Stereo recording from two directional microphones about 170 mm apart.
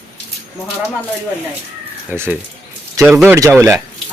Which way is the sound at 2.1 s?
15° right (ahead or behind).